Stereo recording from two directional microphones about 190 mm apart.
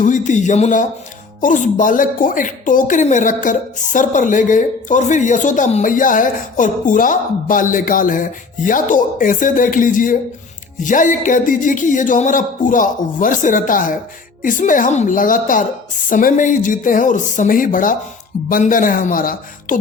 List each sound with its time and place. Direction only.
0.0 s a woman's voice: 40° left (ahead or behind)